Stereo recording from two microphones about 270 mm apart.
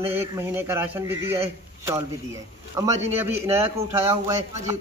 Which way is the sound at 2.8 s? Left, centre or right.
Centre.